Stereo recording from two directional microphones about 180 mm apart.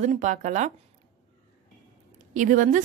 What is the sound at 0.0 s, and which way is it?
Speech, 40° right (ahead or behind).